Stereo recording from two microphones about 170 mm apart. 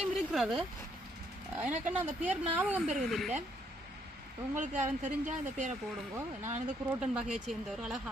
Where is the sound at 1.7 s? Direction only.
45° right (ahead or behind).